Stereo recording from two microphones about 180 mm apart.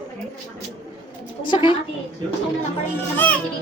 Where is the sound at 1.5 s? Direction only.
30° left (ahead or behind).